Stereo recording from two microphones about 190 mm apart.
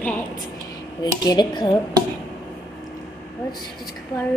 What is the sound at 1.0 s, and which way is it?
Speech, 20° left (ahead or behind).